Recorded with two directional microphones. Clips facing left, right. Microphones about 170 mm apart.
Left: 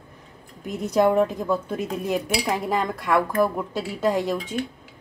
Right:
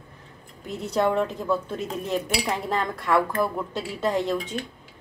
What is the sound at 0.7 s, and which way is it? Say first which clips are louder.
A woman's voice: left 4 dB; 15° left (ahead or behind).